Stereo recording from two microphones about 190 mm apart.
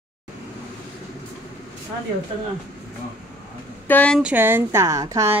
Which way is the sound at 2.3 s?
30° right (ahead or behind).